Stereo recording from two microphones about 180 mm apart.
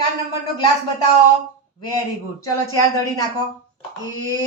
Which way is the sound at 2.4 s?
20° left (ahead or behind).